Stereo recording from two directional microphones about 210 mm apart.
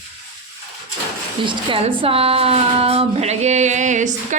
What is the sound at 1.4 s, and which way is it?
A woman's voice, 25° right (ahead or behind).